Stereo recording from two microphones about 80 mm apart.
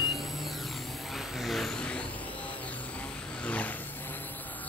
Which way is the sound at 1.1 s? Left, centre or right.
Centre.